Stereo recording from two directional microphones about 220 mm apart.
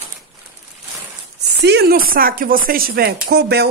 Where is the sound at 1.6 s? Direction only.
50° right (ahead or behind).